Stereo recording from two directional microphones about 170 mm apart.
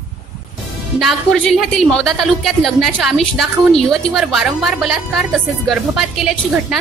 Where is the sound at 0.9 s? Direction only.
Centre (ahead or behind).